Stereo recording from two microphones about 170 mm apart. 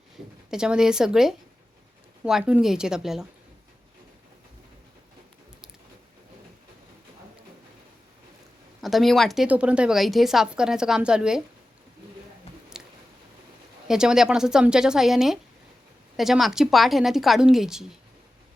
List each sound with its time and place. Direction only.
0.5 s a woman's voice: 5° right (ahead or behind)
8.8 s a woman's voice: centre (ahead or behind)
12.7 s chewing: 5° right (ahead or behind)
13.8 s a woman's voice: 5° right (ahead or behind)